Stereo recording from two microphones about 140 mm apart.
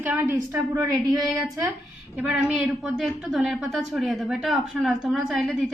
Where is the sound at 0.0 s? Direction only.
15° right (ahead or behind).